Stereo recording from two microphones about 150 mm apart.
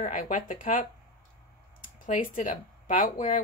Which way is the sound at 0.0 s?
60° left (ahead or behind).